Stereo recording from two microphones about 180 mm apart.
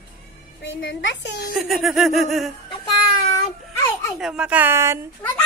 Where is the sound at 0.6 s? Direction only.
90° left; by 1.5 s 75° left (ahead or behind).